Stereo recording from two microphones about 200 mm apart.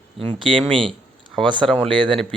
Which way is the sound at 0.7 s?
25° right (ahead or behind).